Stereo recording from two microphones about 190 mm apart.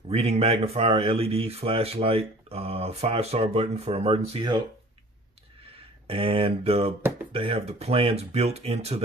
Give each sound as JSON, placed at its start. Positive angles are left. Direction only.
{"t": 0.1, "sound": "speech", "side_deg": -35}
{"t": 6.0, "sound": "speech", "side_deg": -30}